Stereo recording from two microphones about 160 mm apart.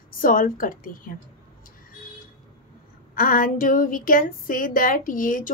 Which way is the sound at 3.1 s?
60° left (ahead or behind).